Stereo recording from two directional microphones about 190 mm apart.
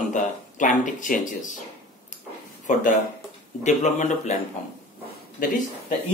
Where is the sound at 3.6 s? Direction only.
40° left (ahead or behind).